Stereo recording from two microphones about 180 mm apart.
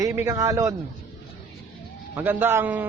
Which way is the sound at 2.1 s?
10° right (ahead or behind).